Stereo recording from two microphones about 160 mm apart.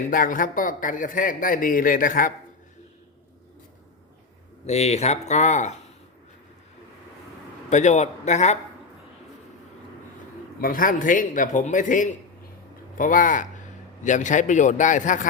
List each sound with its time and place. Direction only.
0.1 s speech: 60° left (ahead or behind)
4.6 s a man's voice: 45° left (ahead or behind)
7.7 s a man's voice: 45° left (ahead or behind)
10.6 s a man's voice: 60° left (ahead or behind)